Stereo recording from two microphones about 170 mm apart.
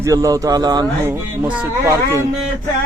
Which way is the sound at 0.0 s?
20° right (ahead or behind).